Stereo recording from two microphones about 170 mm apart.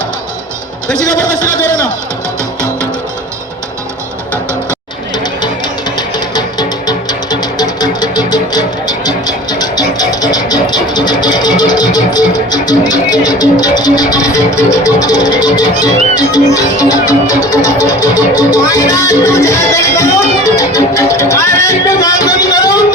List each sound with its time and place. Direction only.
1.3 s a man's voice: 15° right (ahead or behind)
5.1 s music: 25° left (ahead or behind)